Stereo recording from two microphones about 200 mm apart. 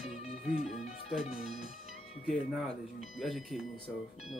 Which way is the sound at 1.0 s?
30° left (ahead or behind).